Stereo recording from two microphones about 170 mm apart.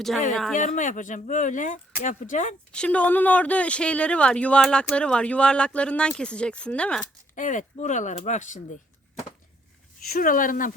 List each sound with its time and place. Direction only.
0.5 s speech: 50° left (ahead or behind)
2.7 s speech: 5° left (ahead or behind)
7.3 s speech: 50° left (ahead or behind)
10.1 s speech: 55° left (ahead or behind)